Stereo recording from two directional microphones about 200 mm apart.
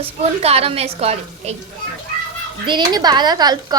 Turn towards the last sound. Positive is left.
turn(degrees=-20)  # may be behind; listen again after turning